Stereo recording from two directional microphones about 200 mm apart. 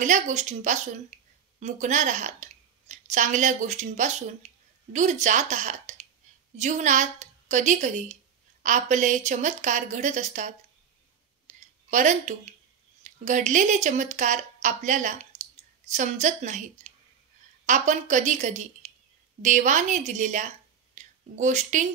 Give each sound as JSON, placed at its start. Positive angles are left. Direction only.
{"t": 0.0, "sound": "a woman's voice", "side_deg": -35}
{"t": 11.4, "sound": "clicking", "side_deg": -40}
{"t": 13.0, "sound": "a woman's voice", "side_deg": -40}